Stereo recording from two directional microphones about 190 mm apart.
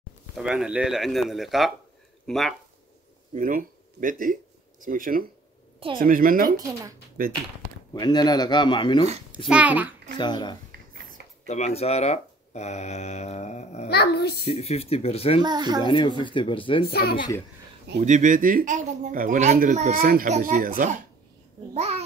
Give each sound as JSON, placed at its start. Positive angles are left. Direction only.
{"t": 0.4, "sound": "speech", "side_deg": -5}
{"t": 3.3, "sound": "speech", "side_deg": -45}
{"t": 7.9, "sound": "speech", "side_deg": 20}
{"t": 9.5, "sound": "a child's voice", "side_deg": -5}
{"t": 10.1, "sound": "speech", "side_deg": 25}
{"t": 11.4, "sound": "speech", "side_deg": 35}
{"t": 13.8, "sound": "a child's voice", "side_deg": 60}
{"t": 14.5, "sound": "speech", "side_deg": 30}
{"t": 15.4, "sound": "speech", "side_deg": -20}
{"t": 15.8, "sound": "speech", "side_deg": 25}
{"t": 16.8, "sound": "a child's voice", "side_deg": 55}
{"t": 17.9, "sound": "speech", "side_deg": -40}
{"t": 21.7, "sound": "a child's voice", "side_deg": -35}